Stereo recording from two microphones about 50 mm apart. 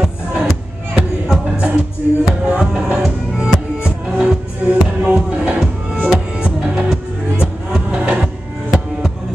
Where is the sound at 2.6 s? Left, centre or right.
Centre.